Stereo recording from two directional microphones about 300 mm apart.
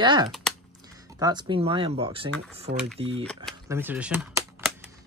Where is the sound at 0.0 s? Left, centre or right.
Centre.